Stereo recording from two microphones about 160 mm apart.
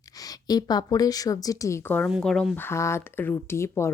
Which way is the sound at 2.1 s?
Centre (ahead or behind).